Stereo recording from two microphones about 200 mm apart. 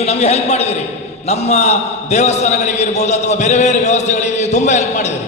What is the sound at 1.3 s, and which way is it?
A man's voice, 35° left (ahead or behind).